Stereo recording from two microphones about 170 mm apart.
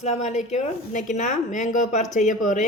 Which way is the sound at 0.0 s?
40° left (ahead or behind).